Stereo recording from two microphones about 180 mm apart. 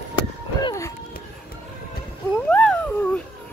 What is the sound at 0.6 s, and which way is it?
Run, 15° left (ahead or behind).